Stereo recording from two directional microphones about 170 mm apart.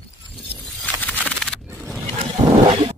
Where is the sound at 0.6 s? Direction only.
5° left (ahead or behind).